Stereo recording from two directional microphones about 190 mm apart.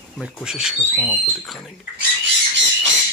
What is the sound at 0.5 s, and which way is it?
Speech, centre (ahead or behind).